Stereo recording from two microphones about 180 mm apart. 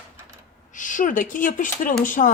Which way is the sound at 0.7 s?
45° left (ahead or behind).